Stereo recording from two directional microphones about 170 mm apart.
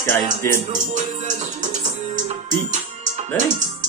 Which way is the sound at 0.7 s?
45° right (ahead or behind).